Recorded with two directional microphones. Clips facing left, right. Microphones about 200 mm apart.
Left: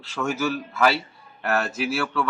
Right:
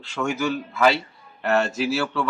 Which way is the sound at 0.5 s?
5° left (ahead or behind).